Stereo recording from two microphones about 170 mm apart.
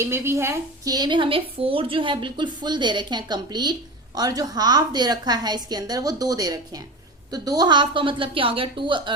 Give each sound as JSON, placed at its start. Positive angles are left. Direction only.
{"t": 0.0, "sound": "a woman's voice", "side_deg": -15}